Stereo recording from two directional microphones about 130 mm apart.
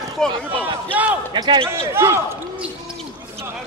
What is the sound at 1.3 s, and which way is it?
Speech, 35° right (ahead or behind).